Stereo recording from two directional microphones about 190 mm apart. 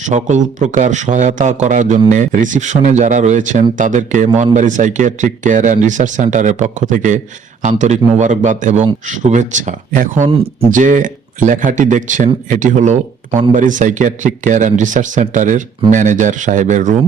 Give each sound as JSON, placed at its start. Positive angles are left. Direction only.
{"t": 0.0, "sound": "speech", "side_deg": -40}